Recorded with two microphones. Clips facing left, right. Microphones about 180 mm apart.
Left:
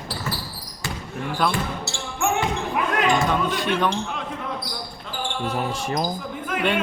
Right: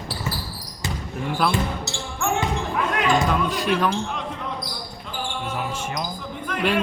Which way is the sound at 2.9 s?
Centre (ahead or behind).